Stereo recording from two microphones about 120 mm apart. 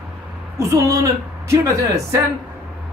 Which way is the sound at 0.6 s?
25° right (ahead or behind).